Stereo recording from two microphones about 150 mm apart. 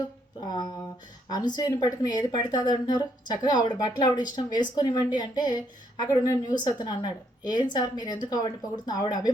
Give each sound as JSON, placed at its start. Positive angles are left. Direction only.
{"t": 1.3, "sound": "speech", "side_deg": 30}